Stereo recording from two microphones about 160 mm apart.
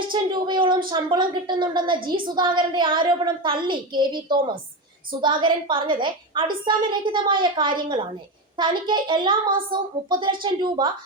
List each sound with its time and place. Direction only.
0.1 s a woman's voice: 30° right (ahead or behind)